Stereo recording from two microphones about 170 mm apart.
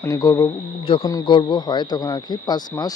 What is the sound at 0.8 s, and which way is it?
Speech, 30° left (ahead or behind).